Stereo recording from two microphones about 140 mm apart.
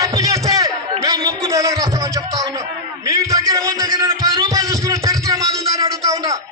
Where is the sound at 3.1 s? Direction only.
25° right (ahead or behind).